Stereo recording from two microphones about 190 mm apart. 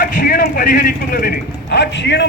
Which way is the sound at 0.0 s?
45° left (ahead or behind).